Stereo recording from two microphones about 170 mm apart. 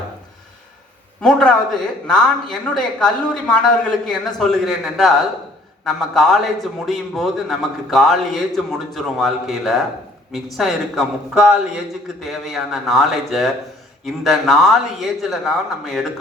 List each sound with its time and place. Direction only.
1.2 s a man's voice: 5° left (ahead or behind)